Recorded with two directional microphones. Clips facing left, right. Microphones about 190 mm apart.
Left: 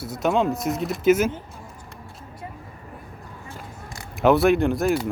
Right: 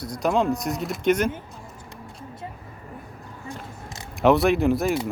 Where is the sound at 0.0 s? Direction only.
5° left (ahead or behind).